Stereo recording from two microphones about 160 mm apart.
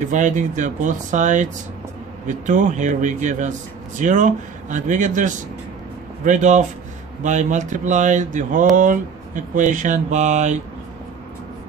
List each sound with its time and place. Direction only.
0.1 s speech: 50° right (ahead or behind)